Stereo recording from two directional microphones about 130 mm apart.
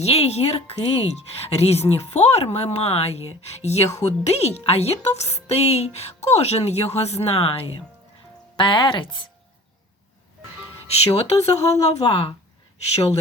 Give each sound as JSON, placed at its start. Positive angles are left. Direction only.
{"t": 0.0, "sound": "speech", "side_deg": 55}
{"t": 11.1, "sound": "speech", "side_deg": 55}